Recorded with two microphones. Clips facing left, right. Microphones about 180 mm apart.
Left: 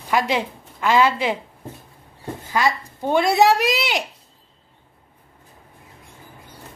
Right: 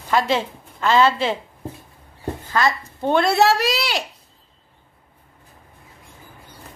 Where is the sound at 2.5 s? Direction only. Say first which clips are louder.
Even; 10° left (ahead or behind).